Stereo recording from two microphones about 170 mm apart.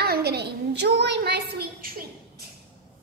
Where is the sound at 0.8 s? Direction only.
85° right; by 2.4 s 60° right (ahead or behind).